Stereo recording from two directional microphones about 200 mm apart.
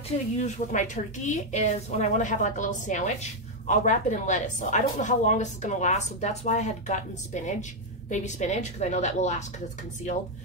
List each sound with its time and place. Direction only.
0.4 s a woman's voice: 40° left (ahead or behind)